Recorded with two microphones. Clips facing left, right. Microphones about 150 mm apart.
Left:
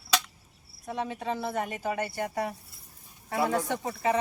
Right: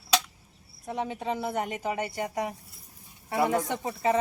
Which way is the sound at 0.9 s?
20° right (ahead or behind).